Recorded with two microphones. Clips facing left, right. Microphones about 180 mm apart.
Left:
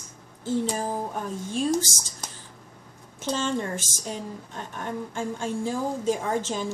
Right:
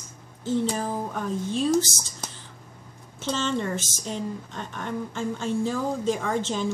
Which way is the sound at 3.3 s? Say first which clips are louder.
Right 1 dB; 10° left (ahead or behind).